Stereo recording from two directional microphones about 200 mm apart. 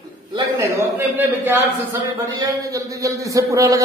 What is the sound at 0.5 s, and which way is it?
A man's voice, 10° right (ahead or behind).